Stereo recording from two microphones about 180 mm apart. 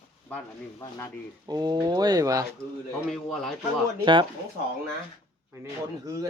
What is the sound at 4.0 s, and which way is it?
Speech, 25° right (ahead or behind).